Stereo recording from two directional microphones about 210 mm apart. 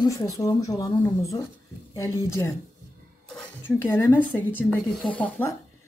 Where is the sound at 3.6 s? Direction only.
10° left (ahead or behind).